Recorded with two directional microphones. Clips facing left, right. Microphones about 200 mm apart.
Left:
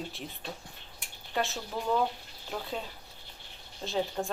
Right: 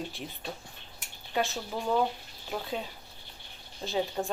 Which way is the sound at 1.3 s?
Centre (ahead or behind).